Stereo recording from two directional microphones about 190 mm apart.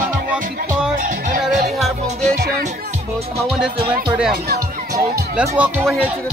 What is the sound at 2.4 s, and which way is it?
Music, 55° right (ahead or behind).